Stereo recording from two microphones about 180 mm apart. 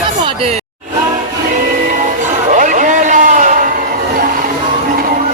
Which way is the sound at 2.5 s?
45° right (ahead or behind).